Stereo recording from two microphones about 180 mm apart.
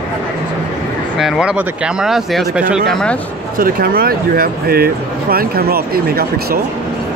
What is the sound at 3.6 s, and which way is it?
Speech, 55° right (ahead or behind).